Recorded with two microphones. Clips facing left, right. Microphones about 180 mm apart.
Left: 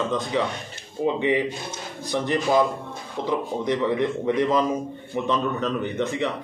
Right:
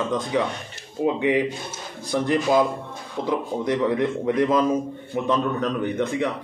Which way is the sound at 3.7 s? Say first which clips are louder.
Right 1 dB; 10° right (ahead or behind).